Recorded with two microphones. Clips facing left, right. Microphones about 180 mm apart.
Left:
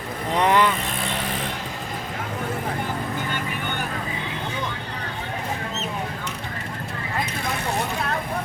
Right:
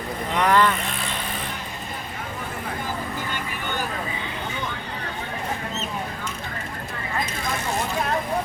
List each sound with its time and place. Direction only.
0.3 s speech: 20° left (ahead or behind)